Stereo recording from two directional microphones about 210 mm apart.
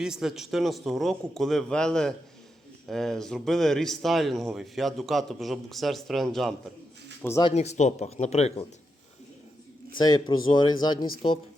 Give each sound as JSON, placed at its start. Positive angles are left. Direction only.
{"t": 0.0, "sound": "speech", "side_deg": 0}
{"t": 7.2, "sound": "speech", "side_deg": 10}
{"t": 7.4, "sound": "speech", "side_deg": 30}
{"t": 10.0, "sound": "speech", "side_deg": 20}